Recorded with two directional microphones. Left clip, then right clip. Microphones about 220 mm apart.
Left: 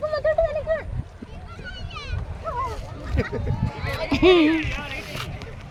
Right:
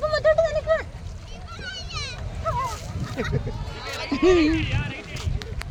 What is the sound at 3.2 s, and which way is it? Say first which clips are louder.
Speech: left 1 dB; 50° left (ahead or behind).